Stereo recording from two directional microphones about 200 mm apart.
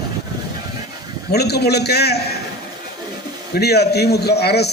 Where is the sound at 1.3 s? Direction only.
55° left (ahead or behind).